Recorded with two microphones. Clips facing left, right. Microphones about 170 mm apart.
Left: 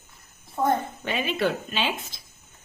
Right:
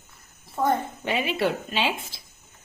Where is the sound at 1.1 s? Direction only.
25° right (ahead or behind).